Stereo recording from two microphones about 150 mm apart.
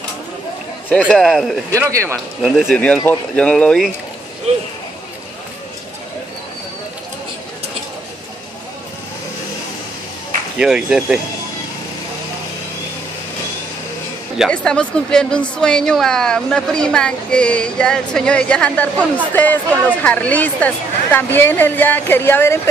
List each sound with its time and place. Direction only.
0.9 s a woman's voice: centre (ahead or behind)
1.7 s speech: 20° right (ahead or behind)
2.4 s a woman's voice: 5° right (ahead or behind)
10.6 s a woman's voice: 5° right (ahead or behind)
14.5 s a woman's voice: 5° left (ahead or behind)